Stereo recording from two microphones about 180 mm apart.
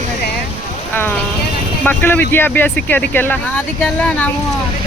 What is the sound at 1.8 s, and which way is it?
Speech, 10° left (ahead or behind).